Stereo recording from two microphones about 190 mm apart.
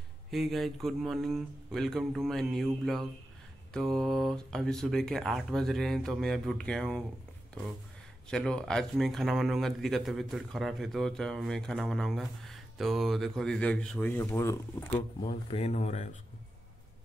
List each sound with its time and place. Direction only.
0.3 s speech: centre (ahead or behind)
8.3 s speech: 5° left (ahead or behind)
15.2 s speech: 30° left (ahead or behind)